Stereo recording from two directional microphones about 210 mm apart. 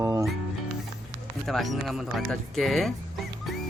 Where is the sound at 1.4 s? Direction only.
Centre (ahead or behind).